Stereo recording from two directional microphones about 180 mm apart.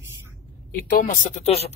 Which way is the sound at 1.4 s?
35° left (ahead or behind).